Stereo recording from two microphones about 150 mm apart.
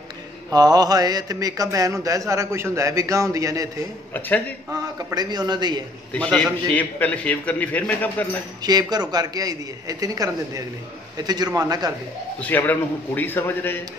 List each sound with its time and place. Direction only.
0.5 s a man's voice: 25° right (ahead or behind)
4.6 s a man's voice: 25° right (ahead or behind)
6.1 s a man's voice: 5° left (ahead or behind)
8.9 s a man's voice: 25° right (ahead or behind)
12.4 s a man's voice: 10° left (ahead or behind)